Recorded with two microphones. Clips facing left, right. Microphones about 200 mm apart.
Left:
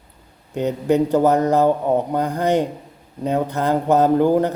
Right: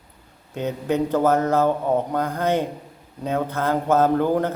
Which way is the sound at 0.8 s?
10° left (ahead or behind).